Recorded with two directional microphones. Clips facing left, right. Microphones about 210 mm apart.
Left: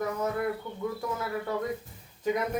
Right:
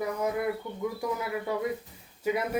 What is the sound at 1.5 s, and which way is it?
Speech, 10° right (ahead or behind).